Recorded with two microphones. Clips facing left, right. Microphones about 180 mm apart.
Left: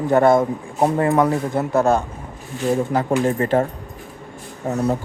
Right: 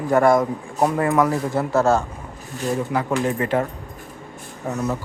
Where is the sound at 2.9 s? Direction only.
35° left (ahead or behind).